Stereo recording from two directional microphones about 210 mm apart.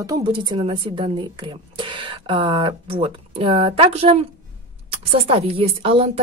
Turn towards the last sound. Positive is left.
turn(degrees=-25)  # may be behind; listen again after turning